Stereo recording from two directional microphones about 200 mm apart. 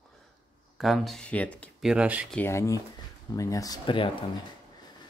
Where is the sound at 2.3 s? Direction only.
10° left (ahead or behind).